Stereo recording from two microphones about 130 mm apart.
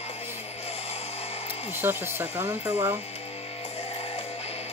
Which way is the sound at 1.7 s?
15° right (ahead or behind).